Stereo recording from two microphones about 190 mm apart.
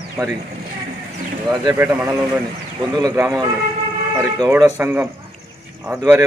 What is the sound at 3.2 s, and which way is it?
Speech, 15° right (ahead or behind).